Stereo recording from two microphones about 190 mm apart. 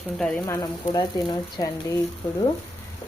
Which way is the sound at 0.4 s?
15° left (ahead or behind).